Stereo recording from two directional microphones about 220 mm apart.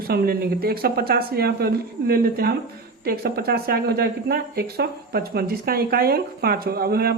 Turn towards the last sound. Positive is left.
turn(degrees=-45)  # may be behind; listen again after turning